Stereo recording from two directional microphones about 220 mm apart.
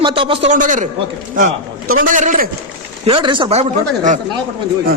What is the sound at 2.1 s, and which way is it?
Speech, 35° right (ahead or behind).